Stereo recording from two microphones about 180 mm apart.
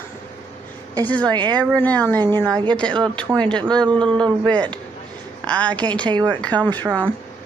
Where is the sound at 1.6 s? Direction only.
10° left (ahead or behind).